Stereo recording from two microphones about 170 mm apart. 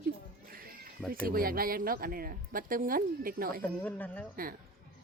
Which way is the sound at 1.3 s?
60° right (ahead or behind).